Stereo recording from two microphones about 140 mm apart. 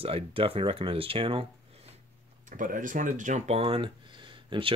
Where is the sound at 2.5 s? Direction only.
70° right (ahead or behind).